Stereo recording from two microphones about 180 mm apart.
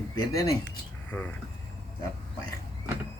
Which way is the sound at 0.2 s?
20° left (ahead or behind).